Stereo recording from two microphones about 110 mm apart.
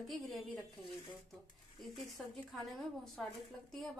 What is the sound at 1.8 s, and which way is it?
A woman's voice, centre (ahead or behind).